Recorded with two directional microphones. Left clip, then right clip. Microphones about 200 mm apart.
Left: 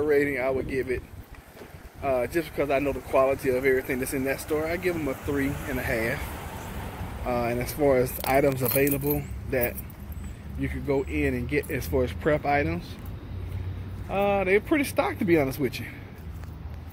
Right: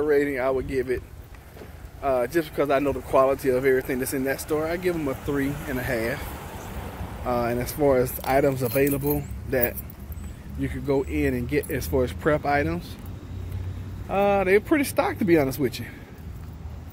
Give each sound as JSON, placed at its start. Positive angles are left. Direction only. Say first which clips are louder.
{"t": 0.0, "sound": "speech", "louder": "right 1 dB", "side_deg": -5}
{"t": 0.4, "sound": "speech", "louder": "right 2 dB", "side_deg": -20}
{"t": 2.0, "sound": "speech", "louder": "right 3 dB", "side_deg": -15}
{"t": 3.4, "sound": "speech", "louder": "right 2 dB", "side_deg": -10}
{"t": 6.3, "sound": "vehicle", "louder": "even", "side_deg": 45}
{"t": 7.2, "sound": "speech", "louder": "right 2 dB", "side_deg": -15}
{"t": 8.5, "sound": "speech", "louder": "right 2 dB", "side_deg": -15}
{"t": 14.0, "sound": "speech", "louder": "right 3 dB", "side_deg": -25}